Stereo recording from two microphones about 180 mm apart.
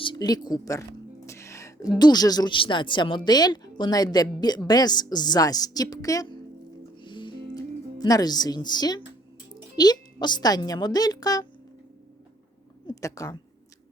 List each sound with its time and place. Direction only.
0.0 s speech: 25° left (ahead or behind)
1.3 s music: 15° left (ahead or behind)
2.0 s speech: 20° left (ahead or behind)
7.0 s music: 25° left (ahead or behind)
9.7 s speech: 20° left (ahead or behind)
13.0 s speech: 20° left (ahead or behind)